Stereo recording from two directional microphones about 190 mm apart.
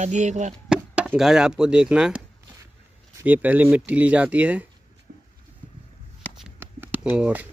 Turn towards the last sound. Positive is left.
turn(degrees=-10)  # may be behind; listen again after turning